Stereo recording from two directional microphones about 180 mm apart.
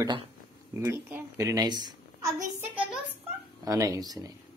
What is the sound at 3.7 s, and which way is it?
Speech, 20° right (ahead or behind).